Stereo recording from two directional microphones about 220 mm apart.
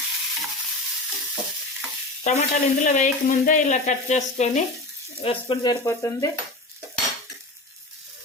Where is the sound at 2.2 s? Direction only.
30° left (ahead or behind).